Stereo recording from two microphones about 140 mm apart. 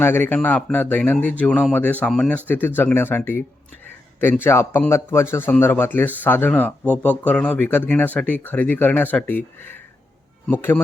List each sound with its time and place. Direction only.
0.0 s speech: 15° left (ahead or behind)